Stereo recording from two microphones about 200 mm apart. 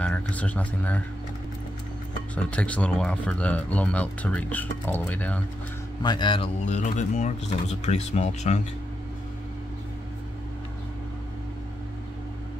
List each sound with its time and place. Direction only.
0.0 s speech: 5° left (ahead or behind)
2.3 s speech: 5° left (ahead or behind)
6.0 s speech: 25° left (ahead or behind)